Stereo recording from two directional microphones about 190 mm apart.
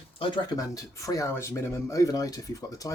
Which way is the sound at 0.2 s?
20° left (ahead or behind).